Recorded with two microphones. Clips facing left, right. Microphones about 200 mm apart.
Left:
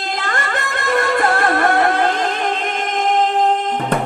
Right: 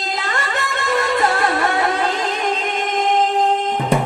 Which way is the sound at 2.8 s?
50° left (ahead or behind).